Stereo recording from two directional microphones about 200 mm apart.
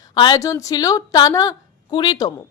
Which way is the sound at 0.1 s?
20° left (ahead or behind).